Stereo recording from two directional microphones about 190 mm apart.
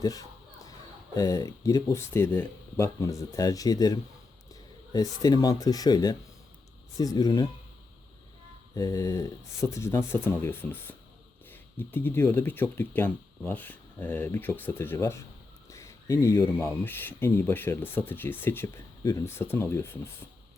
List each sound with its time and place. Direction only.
0.0 s a sound: 20° left (ahead or behind)
1.1 s speech: 20° left (ahead or behind)
8.7 s speech: 20° left (ahead or behind)